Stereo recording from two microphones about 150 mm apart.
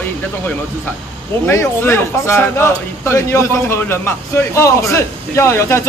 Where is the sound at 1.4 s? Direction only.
15° left (ahead or behind).